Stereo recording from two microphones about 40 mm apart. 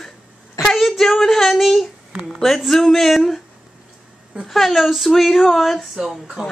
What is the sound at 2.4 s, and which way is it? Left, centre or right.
Speech, centre.